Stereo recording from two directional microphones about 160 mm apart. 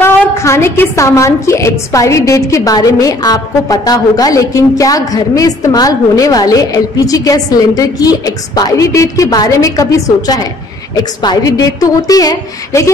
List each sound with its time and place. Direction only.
0.0 s a woman's voice: 15° left (ahead or behind)